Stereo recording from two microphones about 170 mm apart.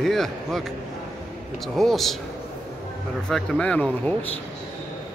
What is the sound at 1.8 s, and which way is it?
Speech, centre (ahead or behind).